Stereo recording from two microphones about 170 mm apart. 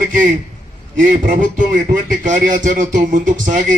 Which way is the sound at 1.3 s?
50° right (ahead or behind).